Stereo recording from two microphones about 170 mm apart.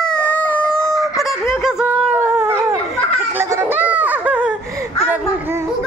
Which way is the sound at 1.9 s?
15° right (ahead or behind).